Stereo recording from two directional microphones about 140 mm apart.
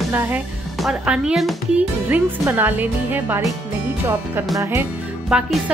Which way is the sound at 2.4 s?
15° right (ahead or behind).